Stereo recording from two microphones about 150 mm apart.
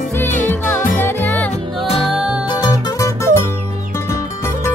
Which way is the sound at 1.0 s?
10° left (ahead or behind).